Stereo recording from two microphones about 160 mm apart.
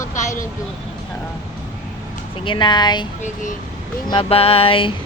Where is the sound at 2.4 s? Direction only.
30° left (ahead or behind).